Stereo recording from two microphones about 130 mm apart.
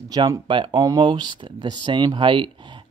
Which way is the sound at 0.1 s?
35° right (ahead or behind).